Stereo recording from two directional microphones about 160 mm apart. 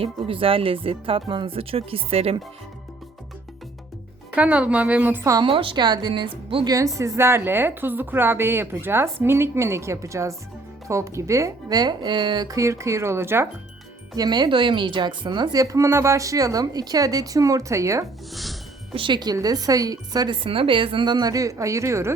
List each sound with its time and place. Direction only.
0.0 s speech: 35° right (ahead or behind)
4.4 s a woman's voice: 10° right (ahead or behind)
5.5 s speech: 35° right (ahead or behind)
6.7 s a woman's voice: 20° right (ahead or behind)
14.2 s speech: 25° right (ahead or behind)
18.9 s speech: 30° right (ahead or behind)